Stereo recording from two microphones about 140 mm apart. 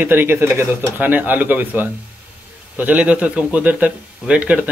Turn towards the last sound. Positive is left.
turn(degrees=-10)  # may be behind; listen again after turning